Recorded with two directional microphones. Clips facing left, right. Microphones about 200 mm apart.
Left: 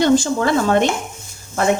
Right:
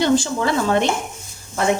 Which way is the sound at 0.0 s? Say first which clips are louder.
Left 3 dB; 50° left (ahead or behind).